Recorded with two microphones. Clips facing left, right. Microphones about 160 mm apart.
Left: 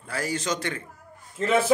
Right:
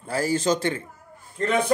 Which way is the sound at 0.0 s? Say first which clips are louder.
Right 6 dB; 30° right (ahead or behind).